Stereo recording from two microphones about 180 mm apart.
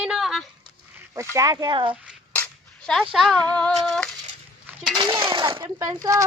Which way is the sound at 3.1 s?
Centre (ahead or behind).